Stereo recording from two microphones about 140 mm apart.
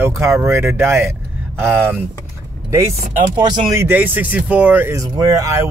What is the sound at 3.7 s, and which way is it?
Speech, 15° right (ahead or behind).